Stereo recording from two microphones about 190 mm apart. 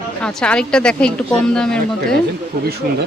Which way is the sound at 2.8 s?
55° right (ahead or behind).